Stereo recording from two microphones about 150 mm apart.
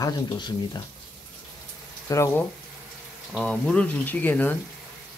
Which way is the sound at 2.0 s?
20° left (ahead or behind).